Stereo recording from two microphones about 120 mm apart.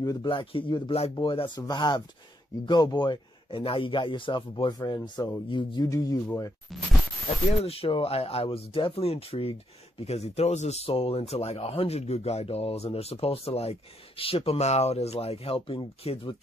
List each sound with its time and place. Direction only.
0.0 s speech: 30° left (ahead or behind)
0.3 s a man's voice: 45° left (ahead or behind)
5.9 s speech: 30° left (ahead or behind)
6.7 s a sound: centre (ahead or behind)
7.6 s speech: 50° left (ahead or behind)